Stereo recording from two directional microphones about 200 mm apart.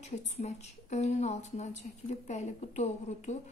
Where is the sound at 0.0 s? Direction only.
35° left (ahead or behind).